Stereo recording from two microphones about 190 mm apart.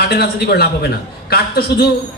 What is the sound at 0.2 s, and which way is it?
Speech, 55° left (ahead or behind).